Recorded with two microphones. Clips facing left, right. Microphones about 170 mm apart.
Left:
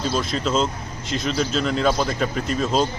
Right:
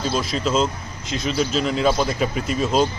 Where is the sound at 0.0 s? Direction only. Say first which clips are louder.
Right 1 dB; centre (ahead or behind).